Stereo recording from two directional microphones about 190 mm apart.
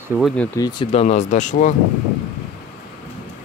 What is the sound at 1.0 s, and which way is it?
Speech, 40° left (ahead or behind).